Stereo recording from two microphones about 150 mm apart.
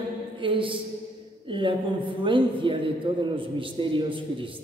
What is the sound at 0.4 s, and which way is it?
A man's voice, 35° right (ahead or behind).